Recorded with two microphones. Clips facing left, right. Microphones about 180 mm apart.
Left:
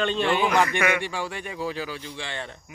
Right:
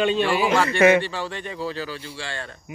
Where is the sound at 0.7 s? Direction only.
25° right (ahead or behind).